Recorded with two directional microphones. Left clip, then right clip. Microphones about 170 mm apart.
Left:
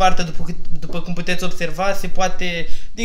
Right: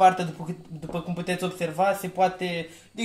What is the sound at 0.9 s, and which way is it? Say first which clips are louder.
A man's voice: left 5 dB; centre (ahead or behind).